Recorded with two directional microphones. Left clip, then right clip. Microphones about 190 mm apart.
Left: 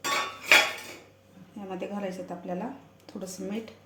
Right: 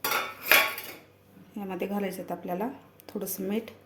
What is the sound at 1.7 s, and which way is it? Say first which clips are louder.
Speech: right 2 dB; 45° right (ahead or behind).